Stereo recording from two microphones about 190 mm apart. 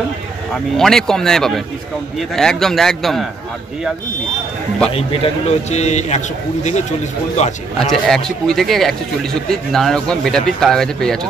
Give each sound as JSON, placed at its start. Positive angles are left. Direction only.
{"t": 0.7, "sound": "a man's voice", "side_deg": 0}
{"t": 4.9, "sound": "a man's voice", "side_deg": 30}
{"t": 7.8, "sound": "a man's voice", "side_deg": 0}